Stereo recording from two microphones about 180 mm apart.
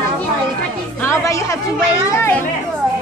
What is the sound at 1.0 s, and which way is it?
Music, 15° left (ahead or behind).